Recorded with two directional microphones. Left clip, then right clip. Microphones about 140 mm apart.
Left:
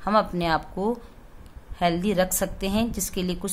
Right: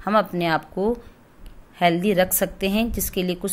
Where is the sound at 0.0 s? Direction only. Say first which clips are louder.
Right 2 dB; 15° right (ahead or behind).